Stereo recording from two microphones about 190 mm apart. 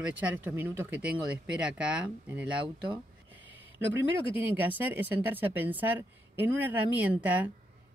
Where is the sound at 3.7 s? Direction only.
10° right (ahead or behind).